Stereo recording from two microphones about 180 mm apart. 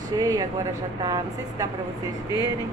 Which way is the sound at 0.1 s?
20° right (ahead or behind).